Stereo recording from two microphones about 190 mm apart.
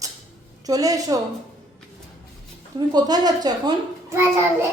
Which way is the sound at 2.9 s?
20° right (ahead or behind).